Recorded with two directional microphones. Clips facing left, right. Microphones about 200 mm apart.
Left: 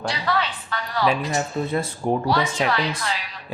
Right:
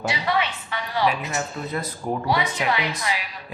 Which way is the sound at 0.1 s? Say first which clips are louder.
Even; 10° right (ahead or behind).